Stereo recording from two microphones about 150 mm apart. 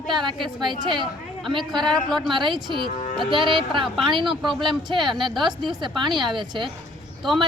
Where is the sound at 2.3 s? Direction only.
30° right (ahead or behind).